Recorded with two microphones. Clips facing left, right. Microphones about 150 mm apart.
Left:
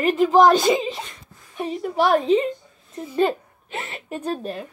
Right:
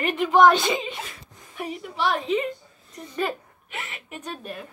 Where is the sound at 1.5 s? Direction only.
25° left (ahead or behind).